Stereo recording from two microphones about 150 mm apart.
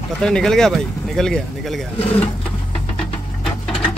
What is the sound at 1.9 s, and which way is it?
Speech, 40° left (ahead or behind).